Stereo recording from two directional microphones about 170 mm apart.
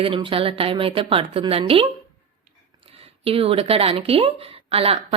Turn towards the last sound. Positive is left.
turn(degrees=-35)  # may be behind; listen again after turning